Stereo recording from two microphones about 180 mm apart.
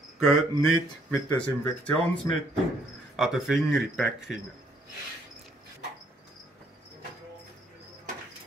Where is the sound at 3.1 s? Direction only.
Centre (ahead or behind).